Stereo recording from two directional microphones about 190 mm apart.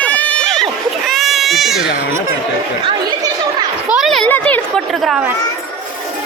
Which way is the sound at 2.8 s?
25° right (ahead or behind).